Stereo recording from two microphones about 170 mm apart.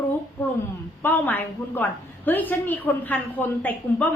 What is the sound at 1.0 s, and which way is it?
A woman's voice, 10° left (ahead or behind).